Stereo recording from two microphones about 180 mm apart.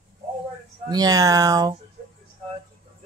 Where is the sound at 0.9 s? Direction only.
20° right (ahead or behind).